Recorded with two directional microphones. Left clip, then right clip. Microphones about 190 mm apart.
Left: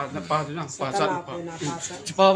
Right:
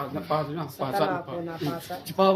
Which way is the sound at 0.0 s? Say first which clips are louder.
Left 2 dB; 15° right (ahead or behind).